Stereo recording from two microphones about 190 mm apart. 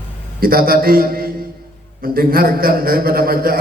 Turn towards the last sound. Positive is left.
turn(degrees=-50)  # may be behind; listen again after turning